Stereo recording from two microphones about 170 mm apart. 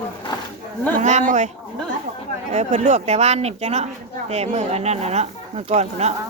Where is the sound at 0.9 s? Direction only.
45° right (ahead or behind).